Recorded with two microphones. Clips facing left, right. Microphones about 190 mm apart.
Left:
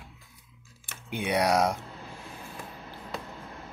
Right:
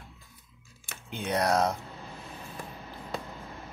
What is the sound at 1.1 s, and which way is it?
Speech, 10° left (ahead or behind).